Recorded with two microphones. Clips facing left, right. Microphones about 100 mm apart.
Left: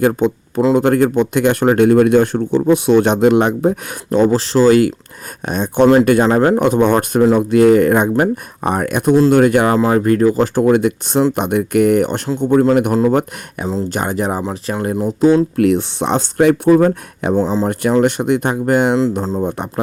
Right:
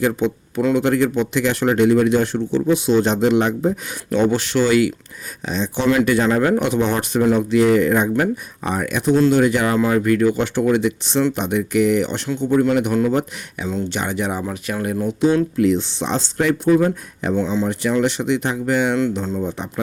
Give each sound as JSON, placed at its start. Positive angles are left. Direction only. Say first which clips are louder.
{"t": 0.0, "sound": "speech", "louder": "left 5 dB", "side_deg": 50}
{"t": 4.1, "sound": "speech", "louder": "left 4 dB", "side_deg": 35}
{"t": 5.5, "sound": "speech", "louder": "left 7 dB", "side_deg": 50}
{"t": 6.2, "sound": "speech", "louder": "left 5 dB", "side_deg": 40}
{"t": 9.7, "sound": "speech", "louder": "left 3 dB", "side_deg": 35}
{"t": 13.7, "sound": "speech", "louder": "left 4 dB", "side_deg": 40}
{"t": 15.5, "sound": "speech", "louder": "left 3 dB", "side_deg": 60}
{"t": 17.3, "sound": "speech", "louder": "left 4 dB", "side_deg": 40}
{"t": 19.5, "sound": "speech", "louder": "left 5 dB", "side_deg": 55}